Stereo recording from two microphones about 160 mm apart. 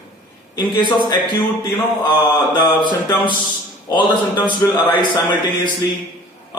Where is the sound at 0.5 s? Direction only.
25° left (ahead or behind).